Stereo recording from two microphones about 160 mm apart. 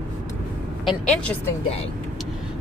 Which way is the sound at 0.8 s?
Centre (ahead or behind).